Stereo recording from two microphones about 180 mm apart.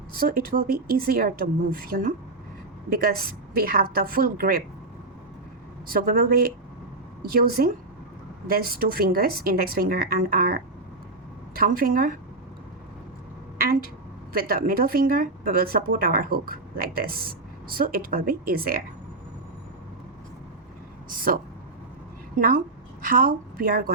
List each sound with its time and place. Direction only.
0.1 s speech: 55° right (ahead or behind)
5.9 s speech: 55° right (ahead or behind)
13.6 s speech: 55° right (ahead or behind)
21.1 s speech: 55° right (ahead or behind)
22.4 s speech: 50° right (ahead or behind)